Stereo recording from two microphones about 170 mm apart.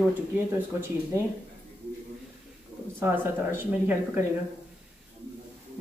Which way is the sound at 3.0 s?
15° right (ahead or behind).